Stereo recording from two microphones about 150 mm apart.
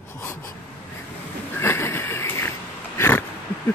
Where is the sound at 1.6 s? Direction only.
15° left (ahead or behind).